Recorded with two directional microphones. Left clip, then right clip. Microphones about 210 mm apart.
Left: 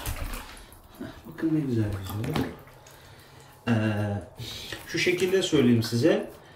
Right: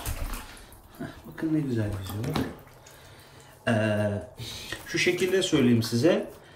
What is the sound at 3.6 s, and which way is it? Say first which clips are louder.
Speech: right 3 dB; 5° left (ahead or behind).